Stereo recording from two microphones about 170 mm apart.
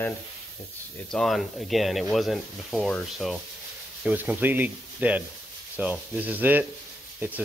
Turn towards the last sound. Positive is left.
turn(degrees=-10)  # may be behind; listen again after turning